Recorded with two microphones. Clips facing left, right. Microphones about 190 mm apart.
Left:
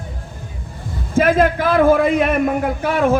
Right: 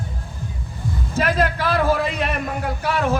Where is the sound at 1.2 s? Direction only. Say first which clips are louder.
Left 7 dB; 50° left (ahead or behind).